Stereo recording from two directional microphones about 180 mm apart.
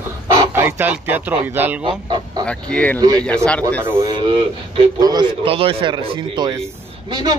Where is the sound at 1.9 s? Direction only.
25° right (ahead or behind).